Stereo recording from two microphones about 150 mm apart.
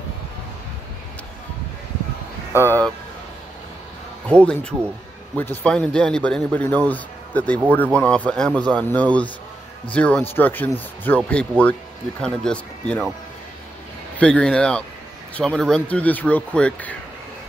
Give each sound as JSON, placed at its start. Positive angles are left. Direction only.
{"t": 2.5, "sound": "speech", "side_deg": -15}
{"t": 4.3, "sound": "speech", "side_deg": 5}
{"t": 14.1, "sound": "speech", "side_deg": 5}